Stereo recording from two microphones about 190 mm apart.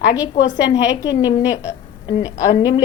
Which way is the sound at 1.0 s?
20° left (ahead or behind).